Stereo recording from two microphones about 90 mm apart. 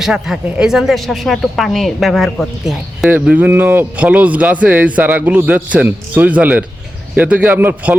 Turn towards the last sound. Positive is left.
turn(degrees=-20)  # may be behind; listen again after turning